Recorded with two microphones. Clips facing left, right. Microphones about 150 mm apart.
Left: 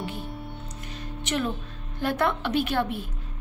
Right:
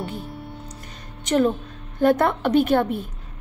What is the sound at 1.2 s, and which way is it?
A woman's voice, 45° right (ahead or behind).